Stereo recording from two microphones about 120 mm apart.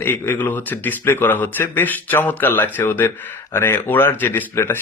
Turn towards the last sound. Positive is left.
turn(degrees=20)  # may be behind; listen again after turning